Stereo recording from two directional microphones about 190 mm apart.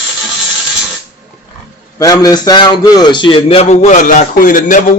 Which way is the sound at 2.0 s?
20° left (ahead or behind).